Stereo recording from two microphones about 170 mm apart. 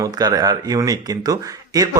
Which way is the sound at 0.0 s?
20° right (ahead or behind).